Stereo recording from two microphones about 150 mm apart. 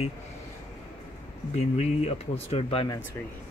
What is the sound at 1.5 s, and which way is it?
Speech, 45° left (ahead or behind).